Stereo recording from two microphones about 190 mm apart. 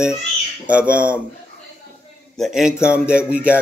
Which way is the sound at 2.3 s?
Centre (ahead or behind).